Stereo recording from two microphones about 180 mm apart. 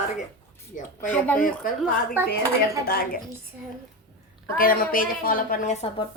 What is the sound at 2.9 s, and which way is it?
Speech, 55° left (ahead or behind).